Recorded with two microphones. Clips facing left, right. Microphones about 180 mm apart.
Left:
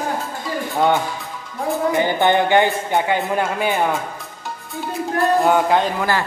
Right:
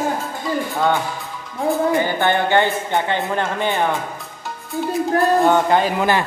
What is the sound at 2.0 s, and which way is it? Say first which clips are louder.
Speech: left 2 dB; 15° left (ahead or behind).